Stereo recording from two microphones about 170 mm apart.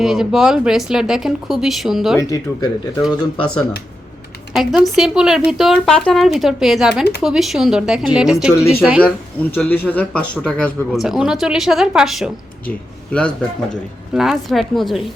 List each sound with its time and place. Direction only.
0.0 s speech: centre (ahead or behind)
2.1 s speech: 20° left (ahead or behind)
4.5 s speech: centre (ahead or behind)
9.0 s speech: 5° left (ahead or behind)
14.1 s speech: 5° right (ahead or behind)